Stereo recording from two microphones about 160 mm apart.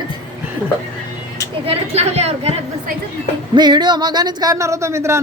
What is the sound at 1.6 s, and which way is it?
Speech, 40° right (ahead or behind).